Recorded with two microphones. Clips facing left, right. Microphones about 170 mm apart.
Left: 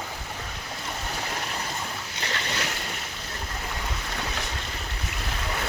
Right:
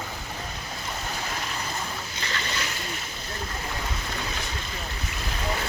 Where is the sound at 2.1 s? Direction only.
70° left (ahead or behind).